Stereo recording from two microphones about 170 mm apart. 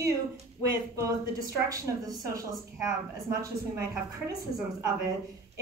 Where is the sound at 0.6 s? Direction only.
20° right (ahead or behind).